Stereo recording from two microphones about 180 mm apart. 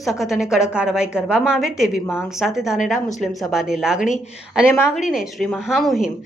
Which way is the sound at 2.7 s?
45° left (ahead or behind).